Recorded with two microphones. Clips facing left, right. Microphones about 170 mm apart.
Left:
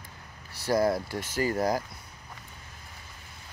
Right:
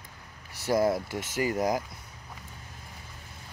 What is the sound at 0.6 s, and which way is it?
Speech, 20° right (ahead or behind).